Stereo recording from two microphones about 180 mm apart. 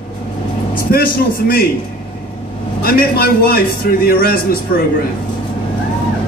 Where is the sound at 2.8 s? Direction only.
55° left (ahead or behind).